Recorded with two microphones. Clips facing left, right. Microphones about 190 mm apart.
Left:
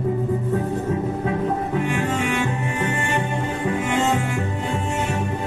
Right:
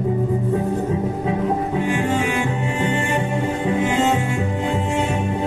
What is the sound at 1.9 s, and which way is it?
Music, 30° right (ahead or behind).